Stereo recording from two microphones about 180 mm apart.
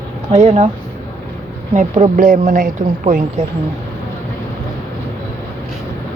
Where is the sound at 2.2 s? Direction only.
50° right (ahead or behind).